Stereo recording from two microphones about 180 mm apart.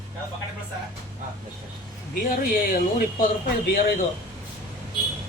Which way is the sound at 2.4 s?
50° left (ahead or behind).